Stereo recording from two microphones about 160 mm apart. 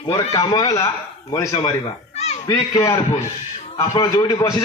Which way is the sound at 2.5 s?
20° left (ahead or behind).